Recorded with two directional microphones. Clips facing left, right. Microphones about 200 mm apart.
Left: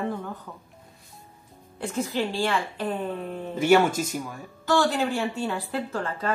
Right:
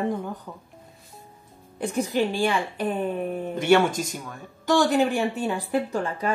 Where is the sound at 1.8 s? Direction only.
15° right (ahead or behind).